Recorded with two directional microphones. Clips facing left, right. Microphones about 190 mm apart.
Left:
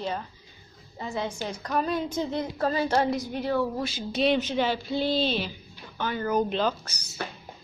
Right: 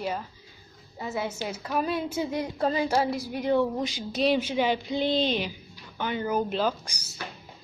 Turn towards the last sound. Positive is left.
turn(degrees=-10)  # may be behind; listen again after turning